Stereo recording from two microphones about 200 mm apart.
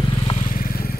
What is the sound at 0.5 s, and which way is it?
Vehicle, 45° left (ahead or behind).